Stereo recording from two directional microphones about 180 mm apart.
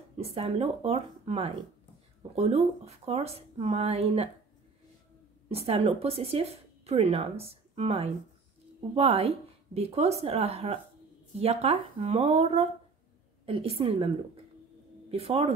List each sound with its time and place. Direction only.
0.2 s speech: 35° right (ahead or behind)
5.5 s speech: 35° right (ahead or behind)